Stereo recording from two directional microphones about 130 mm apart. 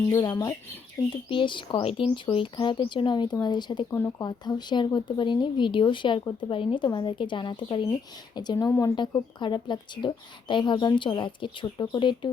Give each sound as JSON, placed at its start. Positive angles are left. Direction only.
{"t": 0.1, "sound": "speech", "side_deg": 25}
{"t": 1.3, "sound": "speech", "side_deg": 40}